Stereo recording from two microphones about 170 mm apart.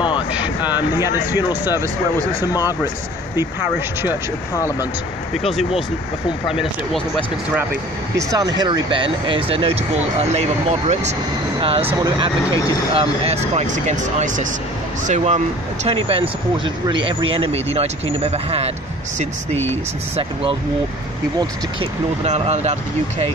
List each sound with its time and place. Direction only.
0.3 s speech: 10° right (ahead or behind)
5.3 s speech: centre (ahead or behind)
8.2 s speech: 20° right (ahead or behind)
12.4 s speech: 20° left (ahead or behind)
12.9 s speech: 35° right (ahead or behind)
19.5 s speech: 15° left (ahead or behind)
22.2 s speech: 40° right (ahead or behind)